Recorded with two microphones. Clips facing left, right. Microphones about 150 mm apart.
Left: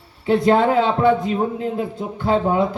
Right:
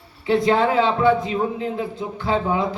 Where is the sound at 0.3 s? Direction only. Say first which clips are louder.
Left 2 dB; 50° left (ahead or behind).